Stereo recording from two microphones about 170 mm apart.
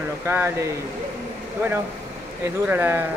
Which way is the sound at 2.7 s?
10° right (ahead or behind).